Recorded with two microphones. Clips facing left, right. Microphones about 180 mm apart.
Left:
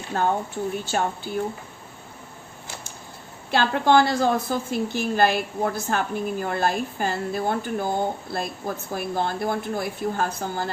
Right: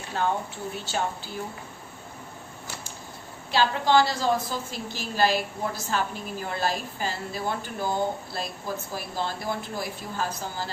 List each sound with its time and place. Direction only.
0.1 s a woman's voice: 45° left (ahead or behind)
3.5 s a woman's voice: 55° left (ahead or behind)